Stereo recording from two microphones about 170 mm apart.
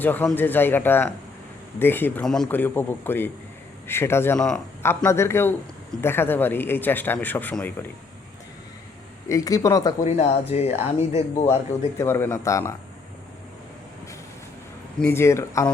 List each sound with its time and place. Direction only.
0.0 s a man's voice: 10° left (ahead or behind)
9.3 s speech: 20° left (ahead or behind)
10.0 s speech: 40° left (ahead or behind)
11.9 s a man's voice: 15° left (ahead or behind)
15.0 s a man's voice: 15° left (ahead or behind)